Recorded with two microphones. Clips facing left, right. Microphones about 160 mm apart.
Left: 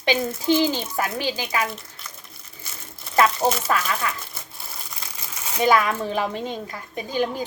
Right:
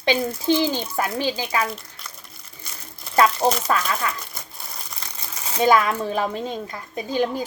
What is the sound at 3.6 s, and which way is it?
Speech, 35° right (ahead or behind).